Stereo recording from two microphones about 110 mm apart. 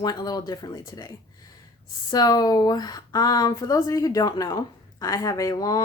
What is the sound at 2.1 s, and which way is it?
Speech, 35° left (ahead or behind).